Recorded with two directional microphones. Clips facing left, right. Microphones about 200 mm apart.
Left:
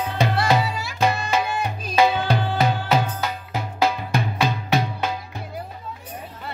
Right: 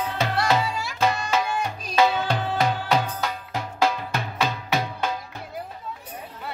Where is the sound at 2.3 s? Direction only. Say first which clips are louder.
Left 2 dB; centre (ahead or behind).